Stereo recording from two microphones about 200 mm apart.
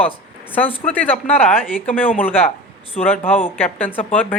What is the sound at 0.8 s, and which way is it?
Speech, 10° left (ahead or behind).